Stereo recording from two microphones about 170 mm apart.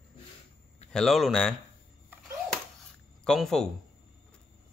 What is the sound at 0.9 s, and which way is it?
Speech, centre (ahead or behind).